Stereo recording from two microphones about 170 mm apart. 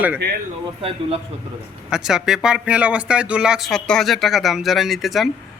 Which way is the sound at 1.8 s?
5° right (ahead or behind).